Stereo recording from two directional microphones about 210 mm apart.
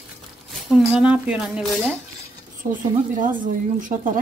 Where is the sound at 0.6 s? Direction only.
5° right (ahead or behind).